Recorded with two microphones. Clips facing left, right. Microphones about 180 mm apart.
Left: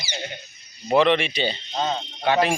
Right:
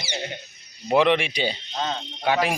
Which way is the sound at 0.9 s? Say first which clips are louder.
Left 1 dB; 10° right (ahead or behind).